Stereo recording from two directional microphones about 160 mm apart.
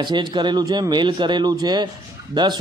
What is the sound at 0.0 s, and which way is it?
Speech, 30° right (ahead or behind).